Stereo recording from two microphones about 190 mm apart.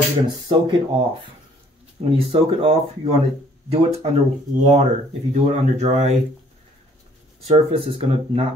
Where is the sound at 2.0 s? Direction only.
30° right (ahead or behind).